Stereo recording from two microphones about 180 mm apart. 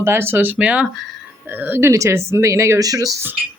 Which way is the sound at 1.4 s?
10° right (ahead or behind).